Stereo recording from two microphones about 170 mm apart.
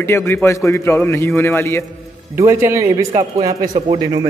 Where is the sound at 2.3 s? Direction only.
15° right (ahead or behind).